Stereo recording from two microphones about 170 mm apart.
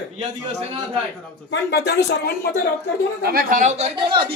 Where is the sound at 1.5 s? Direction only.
80° left.